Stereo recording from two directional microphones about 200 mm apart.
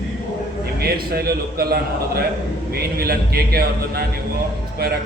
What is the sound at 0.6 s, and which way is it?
A man's voice, 50° right (ahead or behind).